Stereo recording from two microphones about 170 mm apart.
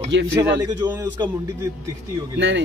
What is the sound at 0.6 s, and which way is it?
Speech, 25° right (ahead or behind).